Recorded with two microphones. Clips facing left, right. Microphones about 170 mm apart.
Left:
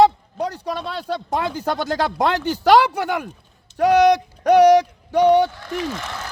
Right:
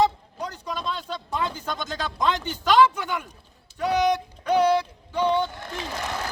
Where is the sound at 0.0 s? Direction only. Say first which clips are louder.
Left 7 dB; 65° left (ahead or behind).